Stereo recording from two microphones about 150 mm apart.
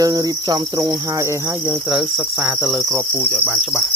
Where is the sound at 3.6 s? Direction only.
5° right (ahead or behind).